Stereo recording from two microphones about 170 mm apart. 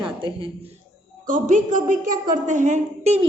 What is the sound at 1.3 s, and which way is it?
A man's voice, 50° right (ahead or behind).